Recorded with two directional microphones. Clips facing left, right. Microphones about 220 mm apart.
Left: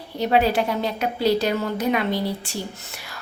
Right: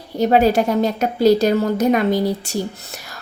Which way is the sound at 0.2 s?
45° right (ahead or behind).